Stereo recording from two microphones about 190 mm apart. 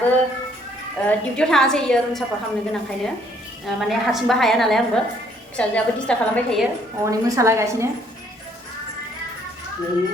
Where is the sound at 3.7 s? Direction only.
Centre (ahead or behind).